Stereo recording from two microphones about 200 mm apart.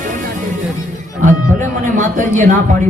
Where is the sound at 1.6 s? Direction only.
40° right (ahead or behind).